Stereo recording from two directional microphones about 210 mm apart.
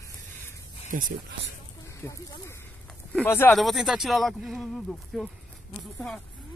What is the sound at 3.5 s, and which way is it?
Speech, centre (ahead or behind).